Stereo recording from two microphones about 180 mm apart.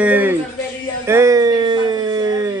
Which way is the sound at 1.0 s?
15° right (ahead or behind).